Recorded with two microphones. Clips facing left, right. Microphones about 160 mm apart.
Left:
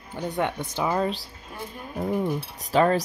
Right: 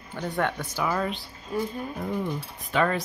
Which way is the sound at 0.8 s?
30° left (ahead or behind).